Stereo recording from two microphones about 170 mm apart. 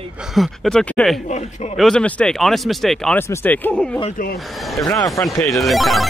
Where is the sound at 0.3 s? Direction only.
Centre (ahead or behind).